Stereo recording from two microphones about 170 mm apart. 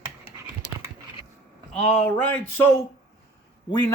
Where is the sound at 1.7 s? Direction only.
10° left (ahead or behind).